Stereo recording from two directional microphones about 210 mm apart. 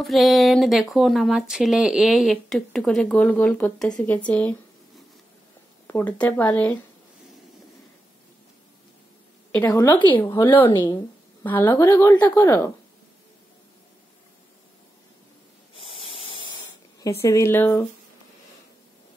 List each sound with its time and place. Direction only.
0.0 s speech: centre (ahead or behind)
4.3 s a sound: 5° left (ahead or behind)
5.9 s a woman's voice: 10° left (ahead or behind)
9.5 s a woman's voice: 10° left (ahead or behind)
15.7 s spray: 25° left (ahead or behind)
17.0 s a woman's voice: 15° left (ahead or behind)